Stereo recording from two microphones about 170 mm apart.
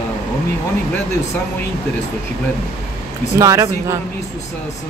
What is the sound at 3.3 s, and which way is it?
Speech, 20° right (ahead or behind).